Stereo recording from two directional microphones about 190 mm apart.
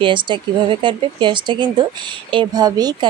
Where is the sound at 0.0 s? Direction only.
25° right (ahead or behind).